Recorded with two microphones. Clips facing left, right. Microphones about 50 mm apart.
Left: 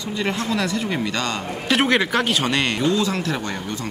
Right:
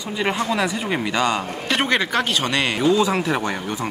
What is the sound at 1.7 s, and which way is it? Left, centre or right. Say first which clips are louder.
Speech: left 2 dB; centre.